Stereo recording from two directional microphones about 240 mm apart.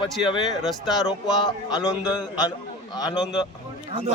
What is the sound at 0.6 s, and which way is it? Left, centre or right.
Speech, centre.